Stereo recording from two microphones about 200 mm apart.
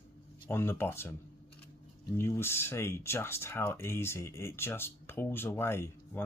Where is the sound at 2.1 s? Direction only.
10° left (ahead or behind).